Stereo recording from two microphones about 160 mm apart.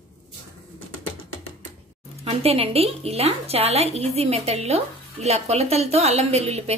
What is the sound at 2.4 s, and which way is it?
A woman's voice, 40° right (ahead or behind).